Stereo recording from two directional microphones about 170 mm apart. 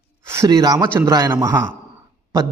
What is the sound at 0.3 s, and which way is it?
Speech, 20° right (ahead or behind).